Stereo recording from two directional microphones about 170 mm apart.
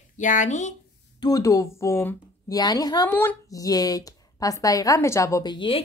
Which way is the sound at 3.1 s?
10° left (ahead or behind).